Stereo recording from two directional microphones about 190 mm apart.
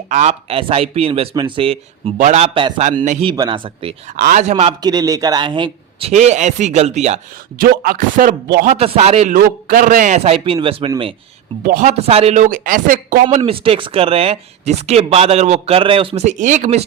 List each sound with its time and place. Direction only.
0.1 s speech: 35° right (ahead or behind)
3.2 s a man's voice: 20° right (ahead or behind)
4.2 s speech: 40° right (ahead or behind)
4.8 s speech: 20° right (ahead or behind); by 7.2 s 35° right (ahead or behind)
7.6 s speech: 50° right (ahead or behind)
8.7 s speech: 35° right (ahead or behind)
9.3 s a man's voice: 45° right (ahead or behind); by 11.1 s 30° right (ahead or behind)
11.6 s speech: 45° right (ahead or behind)
13.2 s speech: 30° right (ahead or behind)